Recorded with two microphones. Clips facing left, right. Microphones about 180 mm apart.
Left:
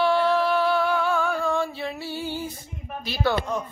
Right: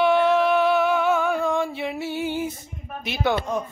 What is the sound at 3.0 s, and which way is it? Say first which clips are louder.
Speech: right 1 dB; 20° right (ahead or behind).